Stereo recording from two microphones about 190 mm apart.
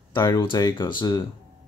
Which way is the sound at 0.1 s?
15° left (ahead or behind).